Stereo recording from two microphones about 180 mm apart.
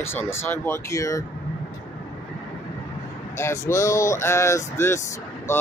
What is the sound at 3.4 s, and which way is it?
Speech, 15° left (ahead or behind).